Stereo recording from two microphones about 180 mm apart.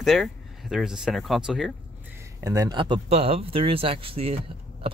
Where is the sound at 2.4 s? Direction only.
20° right (ahead or behind).